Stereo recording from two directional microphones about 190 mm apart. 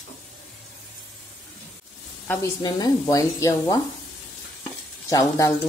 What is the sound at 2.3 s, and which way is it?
Speech, 20° left (ahead or behind).